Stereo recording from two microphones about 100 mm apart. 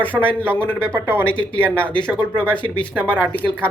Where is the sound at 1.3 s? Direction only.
10° left (ahead or behind).